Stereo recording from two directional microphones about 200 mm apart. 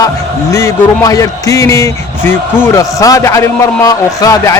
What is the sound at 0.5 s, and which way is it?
A man's voice, 15° left (ahead or behind).